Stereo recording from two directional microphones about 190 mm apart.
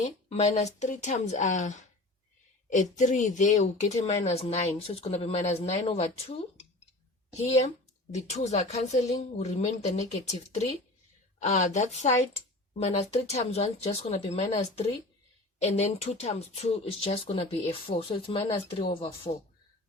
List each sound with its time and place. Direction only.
0.0 s speech: 35° left (ahead or behind)